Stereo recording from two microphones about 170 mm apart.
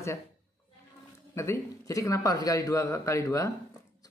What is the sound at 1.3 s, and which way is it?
Speech, 15° left (ahead or behind).